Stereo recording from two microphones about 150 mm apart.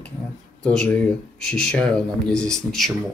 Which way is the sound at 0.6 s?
5° left (ahead or behind).